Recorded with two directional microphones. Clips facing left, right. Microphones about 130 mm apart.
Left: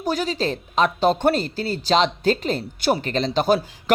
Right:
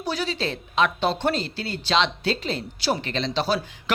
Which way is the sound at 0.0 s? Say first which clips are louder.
Left 4 dB; 45° left (ahead or behind).